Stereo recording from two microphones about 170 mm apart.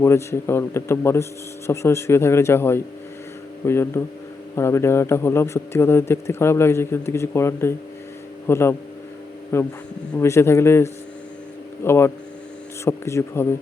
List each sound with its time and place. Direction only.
0.0 s a man's voice: 15° left (ahead or behind)